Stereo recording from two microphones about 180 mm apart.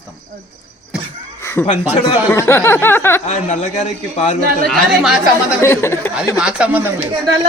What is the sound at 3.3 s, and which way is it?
A man's voice, 40° left (ahead or behind).